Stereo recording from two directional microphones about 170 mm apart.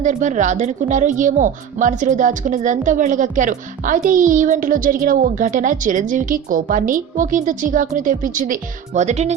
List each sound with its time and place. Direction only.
0.0 s speech: 45° right (ahead or behind)
9.0 s speech: 40° right (ahead or behind)